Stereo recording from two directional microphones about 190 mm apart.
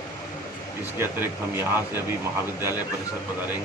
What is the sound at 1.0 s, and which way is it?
A man's voice, 10° right (ahead or behind).